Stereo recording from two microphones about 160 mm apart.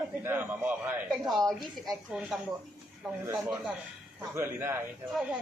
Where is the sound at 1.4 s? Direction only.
Centre (ahead or behind).